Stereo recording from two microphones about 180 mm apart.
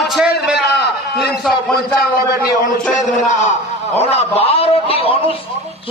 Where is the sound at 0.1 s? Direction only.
5° right (ahead or behind).